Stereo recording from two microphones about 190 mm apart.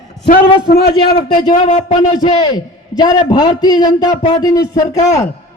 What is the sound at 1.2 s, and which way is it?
A man's voice, 25° left (ahead or behind).